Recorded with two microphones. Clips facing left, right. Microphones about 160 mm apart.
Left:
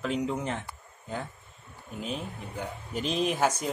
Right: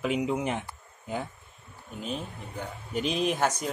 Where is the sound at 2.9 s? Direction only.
Centre (ahead or behind).